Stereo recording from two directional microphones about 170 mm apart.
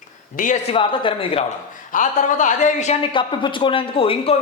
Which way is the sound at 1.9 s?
50° left (ahead or behind).